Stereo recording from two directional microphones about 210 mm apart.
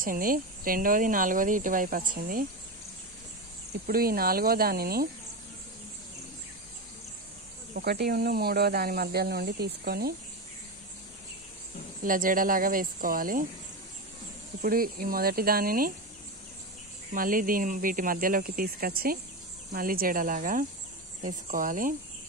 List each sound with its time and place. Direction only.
0.0 s speech: 40° right (ahead or behind)
3.8 s speech: 45° right (ahead or behind)
7.7 s speech: 50° right (ahead or behind)
12.0 s speech: 40° right (ahead or behind)
14.6 s speech: 45° right (ahead or behind)
17.1 s speech: 40° right (ahead or behind)